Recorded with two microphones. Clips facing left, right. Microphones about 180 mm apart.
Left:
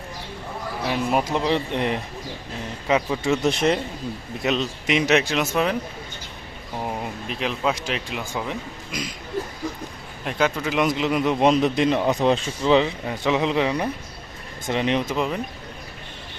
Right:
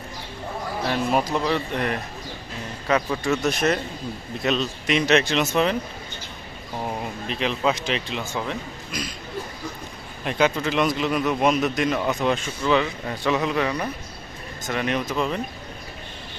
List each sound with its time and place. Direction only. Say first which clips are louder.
0.9 s a sound: even; 10° left (ahead or behind)
1.2 s a man's voice: left 1 dB; 20° left (ahead or behind)
2.8 s speech: left 1 dB; 10° left (ahead or behind)
3.4 s a man's voice: left 2 dB; 25° left (ahead or behind); by 5.7 s 5° left (ahead or behind)
6.8 s speech: even; 5° left (ahead or behind)
10.2 s a man's voice: right 1 dB; centre (ahead or behind); by 15.4 s 15° left (ahead or behind)